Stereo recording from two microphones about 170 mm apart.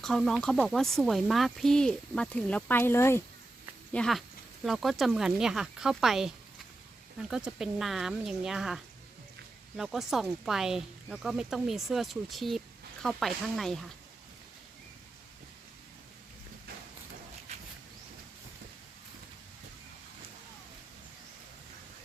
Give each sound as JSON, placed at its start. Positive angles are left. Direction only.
{"t": 0.0, "sound": "speech", "side_deg": 5}
{"t": 3.9, "sound": "speech", "side_deg": 5}
{"t": 17.5, "sound": "a sound", "side_deg": -40}